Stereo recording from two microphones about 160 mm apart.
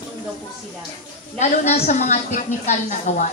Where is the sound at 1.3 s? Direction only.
45° left (ahead or behind).